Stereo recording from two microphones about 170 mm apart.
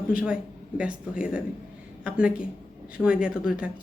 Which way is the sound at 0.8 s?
5° right (ahead or behind).